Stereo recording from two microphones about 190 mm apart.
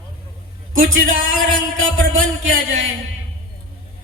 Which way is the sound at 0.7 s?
90° right.